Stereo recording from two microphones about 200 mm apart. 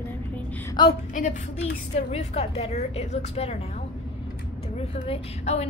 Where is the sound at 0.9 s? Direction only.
40° left (ahead or behind).